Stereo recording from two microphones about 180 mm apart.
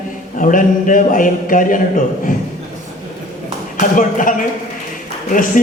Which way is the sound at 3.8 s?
45° left (ahead or behind).